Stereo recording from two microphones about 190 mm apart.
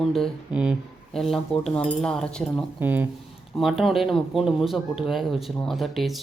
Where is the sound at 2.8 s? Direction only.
10° right (ahead or behind).